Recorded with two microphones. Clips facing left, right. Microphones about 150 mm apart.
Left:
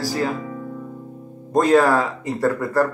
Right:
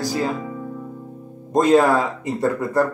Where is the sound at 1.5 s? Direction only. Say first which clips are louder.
Even; 20° right (ahead or behind).